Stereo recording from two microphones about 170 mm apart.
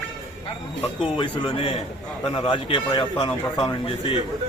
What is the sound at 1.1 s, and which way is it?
Speech, 30° left (ahead or behind).